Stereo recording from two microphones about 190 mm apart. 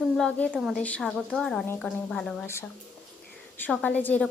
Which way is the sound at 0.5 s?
5° right (ahead or behind).